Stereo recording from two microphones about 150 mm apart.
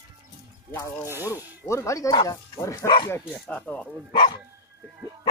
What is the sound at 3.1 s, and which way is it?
Speech, 10° left (ahead or behind).